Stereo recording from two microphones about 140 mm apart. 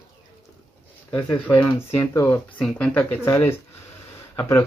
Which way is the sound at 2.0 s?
20° left (ahead or behind).